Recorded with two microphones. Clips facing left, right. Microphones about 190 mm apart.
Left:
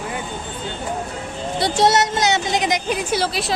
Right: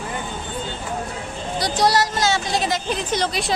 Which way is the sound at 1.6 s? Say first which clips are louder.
Left 2 dB; 25° left (ahead or behind).